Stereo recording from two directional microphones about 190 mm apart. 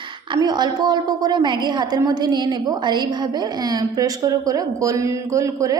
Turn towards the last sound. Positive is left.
turn(degrees=-15)  # may be behind; listen again after turning